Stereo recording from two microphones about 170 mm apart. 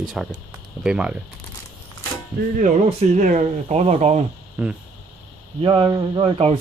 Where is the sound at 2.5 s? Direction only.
45° right (ahead or behind).